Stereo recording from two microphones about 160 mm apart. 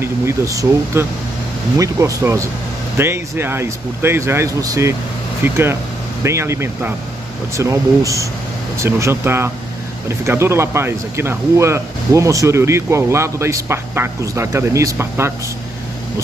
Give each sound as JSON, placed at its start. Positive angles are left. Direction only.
{"t": 0.0, "sound": "speech", "side_deg": -20}